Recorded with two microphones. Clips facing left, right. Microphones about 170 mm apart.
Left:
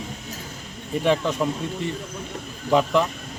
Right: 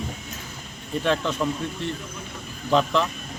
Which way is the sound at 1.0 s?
10° left (ahead or behind).